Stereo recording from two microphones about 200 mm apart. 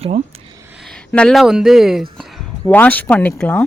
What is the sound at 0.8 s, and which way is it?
Speech, 5° left (ahead or behind).